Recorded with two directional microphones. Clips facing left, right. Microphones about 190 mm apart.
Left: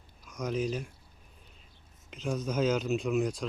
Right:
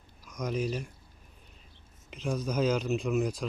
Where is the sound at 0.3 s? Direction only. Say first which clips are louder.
Even; centre (ahead or behind).